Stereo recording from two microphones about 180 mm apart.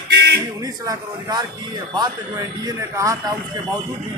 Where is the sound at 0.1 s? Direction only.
70° right (ahead or behind).